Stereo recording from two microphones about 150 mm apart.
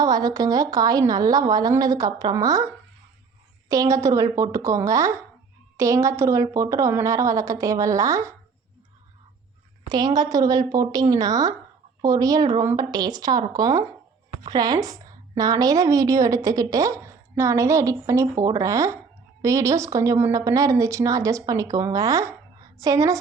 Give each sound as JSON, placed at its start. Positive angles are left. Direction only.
{"t": 0.0, "sound": "a woman's voice", "side_deg": -25}
{"t": 9.9, "sound": "a woman's voice", "side_deg": -25}